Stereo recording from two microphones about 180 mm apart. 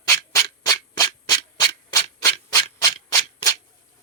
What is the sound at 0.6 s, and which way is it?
Hands, 20° left (ahead or behind).